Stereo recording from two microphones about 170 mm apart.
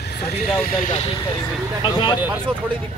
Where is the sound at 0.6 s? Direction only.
55° left (ahead or behind).